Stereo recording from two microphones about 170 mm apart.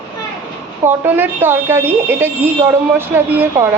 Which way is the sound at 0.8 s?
15° right (ahead or behind).